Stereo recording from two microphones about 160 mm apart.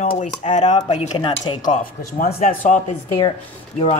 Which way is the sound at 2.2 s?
55° left (ahead or behind).